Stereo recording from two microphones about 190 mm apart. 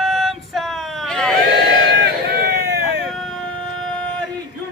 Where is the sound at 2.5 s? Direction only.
60° right (ahead or behind).